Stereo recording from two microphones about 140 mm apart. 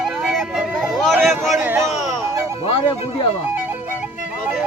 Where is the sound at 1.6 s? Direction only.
15° right (ahead or behind).